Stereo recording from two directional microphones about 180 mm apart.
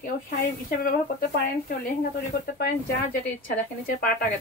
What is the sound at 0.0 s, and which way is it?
Speech, 55° left (ahead or behind).